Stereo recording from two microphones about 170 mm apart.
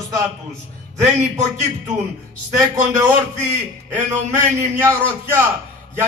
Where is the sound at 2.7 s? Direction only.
20° right (ahead or behind).